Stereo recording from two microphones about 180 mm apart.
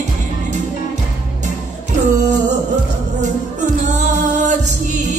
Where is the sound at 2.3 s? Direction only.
40° right (ahead or behind).